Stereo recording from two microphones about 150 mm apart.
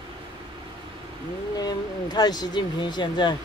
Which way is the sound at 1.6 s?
25° left (ahead or behind).